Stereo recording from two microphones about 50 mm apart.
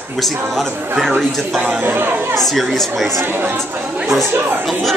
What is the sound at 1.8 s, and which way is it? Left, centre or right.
Speech, right.